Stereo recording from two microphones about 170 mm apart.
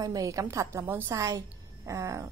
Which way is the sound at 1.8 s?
20° right (ahead or behind).